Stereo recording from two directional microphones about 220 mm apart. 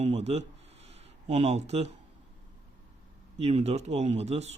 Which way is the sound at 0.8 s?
30° right (ahead or behind).